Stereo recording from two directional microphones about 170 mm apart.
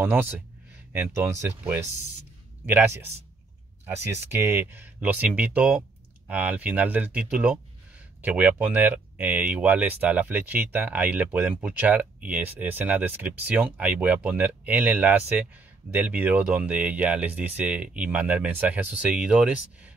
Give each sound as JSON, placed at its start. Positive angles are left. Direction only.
{"t": 0.0, "sound": "speech", "side_deg": -10}